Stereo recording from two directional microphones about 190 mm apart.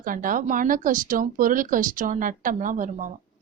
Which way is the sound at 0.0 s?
45° right (ahead or behind).